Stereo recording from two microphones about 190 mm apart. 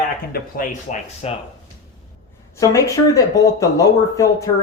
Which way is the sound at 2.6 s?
15° left (ahead or behind).